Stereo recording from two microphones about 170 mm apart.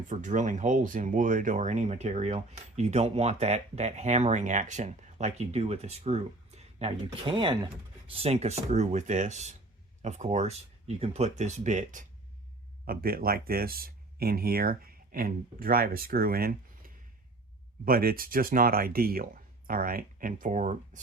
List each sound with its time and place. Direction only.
0.1 s speech: 45° right (ahead or behind)
12.8 s speech: 60° right (ahead or behind)